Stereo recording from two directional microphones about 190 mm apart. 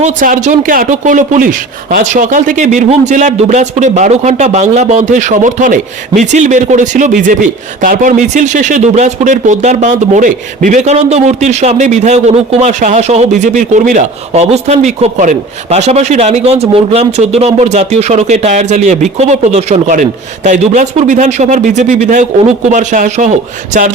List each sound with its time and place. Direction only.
0.0 s speech: 40° right (ahead or behind)